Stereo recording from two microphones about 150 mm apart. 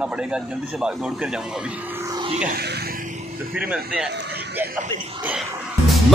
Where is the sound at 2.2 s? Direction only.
50° right (ahead or behind).